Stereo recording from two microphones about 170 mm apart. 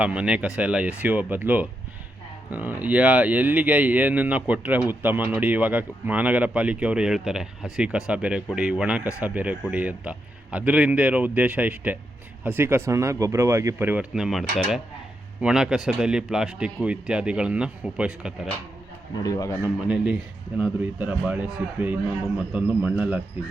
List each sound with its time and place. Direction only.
0.0 s a man's voice: 5° right (ahead or behind)
19.2 s speech: 20° left (ahead or behind)
19.6 s speech: 10° right (ahead or behind)